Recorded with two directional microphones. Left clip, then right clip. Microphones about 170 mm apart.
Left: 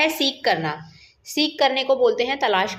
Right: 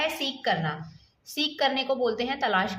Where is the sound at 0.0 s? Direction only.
15° left (ahead or behind).